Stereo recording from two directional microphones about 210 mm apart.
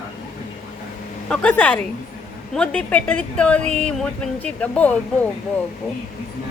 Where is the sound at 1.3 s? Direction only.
5° left (ahead or behind).